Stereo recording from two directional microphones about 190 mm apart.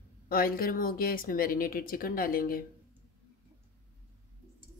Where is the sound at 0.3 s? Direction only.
50° left (ahead or behind).